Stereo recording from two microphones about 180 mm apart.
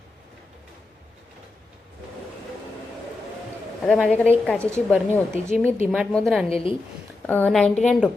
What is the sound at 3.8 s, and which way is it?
Speech, centre (ahead or behind).